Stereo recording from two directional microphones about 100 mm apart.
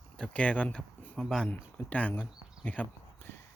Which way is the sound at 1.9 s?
15° left (ahead or behind).